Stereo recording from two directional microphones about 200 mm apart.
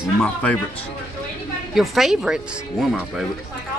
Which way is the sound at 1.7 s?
Centre (ahead or behind).